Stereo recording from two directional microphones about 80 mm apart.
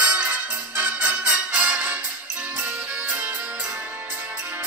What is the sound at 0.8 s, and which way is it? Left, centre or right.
Music, right.